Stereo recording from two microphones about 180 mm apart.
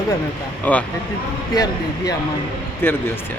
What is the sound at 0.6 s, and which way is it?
Speech, 10° left (ahead or behind).